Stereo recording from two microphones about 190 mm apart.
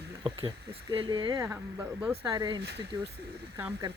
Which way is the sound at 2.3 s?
20° right (ahead or behind).